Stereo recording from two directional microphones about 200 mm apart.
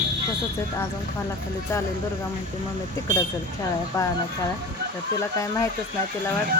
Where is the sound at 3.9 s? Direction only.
15° left (ahead or behind).